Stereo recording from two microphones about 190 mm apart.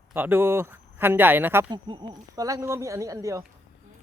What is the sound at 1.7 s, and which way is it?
Speech, 25° right (ahead or behind).